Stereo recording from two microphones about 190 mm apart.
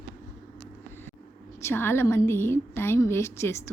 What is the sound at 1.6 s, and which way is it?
A woman's voice, 15° left (ahead or behind).